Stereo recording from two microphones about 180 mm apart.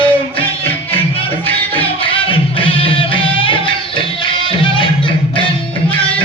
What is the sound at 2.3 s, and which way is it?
Music, 30° left (ahead or behind).